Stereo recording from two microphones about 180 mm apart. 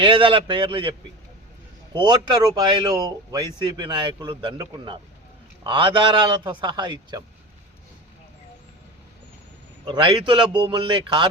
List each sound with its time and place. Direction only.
0.0 s speech: 30° right (ahead or behind)
9.8 s speech: 25° right (ahead or behind)